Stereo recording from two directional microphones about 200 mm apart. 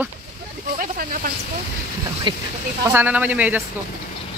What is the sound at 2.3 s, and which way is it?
Speech, 25° right (ahead or behind).